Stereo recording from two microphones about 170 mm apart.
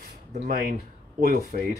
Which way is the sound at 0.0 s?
60° right (ahead or behind).